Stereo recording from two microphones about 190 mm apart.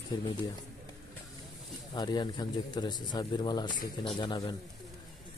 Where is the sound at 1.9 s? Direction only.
25° left (ahead or behind).